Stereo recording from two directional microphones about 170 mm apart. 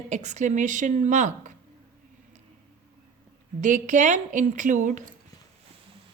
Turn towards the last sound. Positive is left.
turn(degrees=-45)  # may be behind; listen again after turning